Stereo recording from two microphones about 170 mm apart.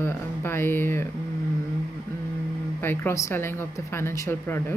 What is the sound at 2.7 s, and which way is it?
Speech, 15° left (ahead or behind).